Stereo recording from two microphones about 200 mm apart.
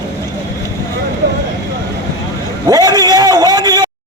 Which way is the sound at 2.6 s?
20° right (ahead or behind).